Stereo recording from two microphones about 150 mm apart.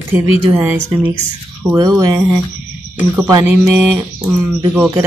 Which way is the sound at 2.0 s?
20° right (ahead or behind).